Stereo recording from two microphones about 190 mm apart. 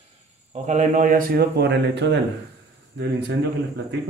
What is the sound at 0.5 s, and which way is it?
Speech, 35° right (ahead or behind).